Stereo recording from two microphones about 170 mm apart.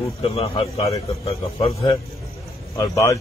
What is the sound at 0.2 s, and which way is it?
A man's voice, 35° left (ahead or behind).